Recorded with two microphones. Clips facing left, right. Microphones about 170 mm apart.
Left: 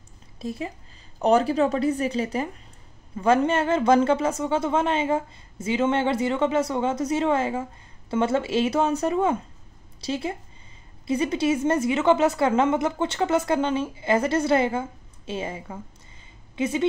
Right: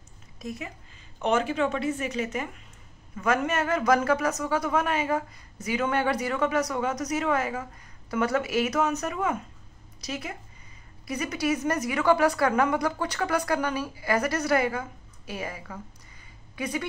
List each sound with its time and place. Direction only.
0.4 s a woman's voice: 30° left (ahead or behind)